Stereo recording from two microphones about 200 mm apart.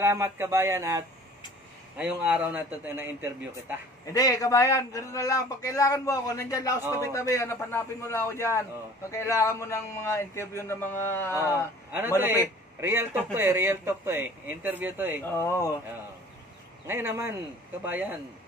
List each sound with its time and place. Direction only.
0.0 s a man's voice: 10° right (ahead or behind)
4.0 s a man's voice: 15° left (ahead or behind)
12.2 s a man's voice: 10° right (ahead or behind)
15.2 s a man's voice: 10° left (ahead or behind)
16.8 s a man's voice: 10° right (ahead or behind)